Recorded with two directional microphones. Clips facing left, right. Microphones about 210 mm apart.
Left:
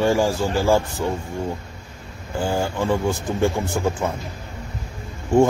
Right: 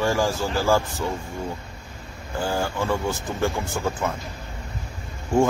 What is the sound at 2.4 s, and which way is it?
Speech, 20° left (ahead or behind).